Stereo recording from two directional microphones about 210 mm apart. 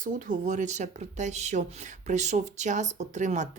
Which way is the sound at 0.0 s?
40° right (ahead or behind).